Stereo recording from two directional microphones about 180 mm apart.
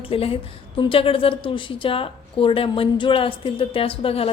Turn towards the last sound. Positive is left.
turn(degrees=30)  # may be behind; listen again after turning